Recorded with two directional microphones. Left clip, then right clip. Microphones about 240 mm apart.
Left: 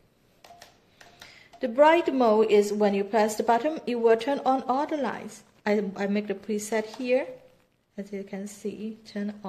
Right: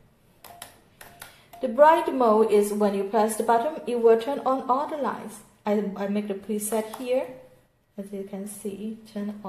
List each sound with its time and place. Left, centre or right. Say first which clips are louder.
1.6 s a woman's voice: right 2 dB; left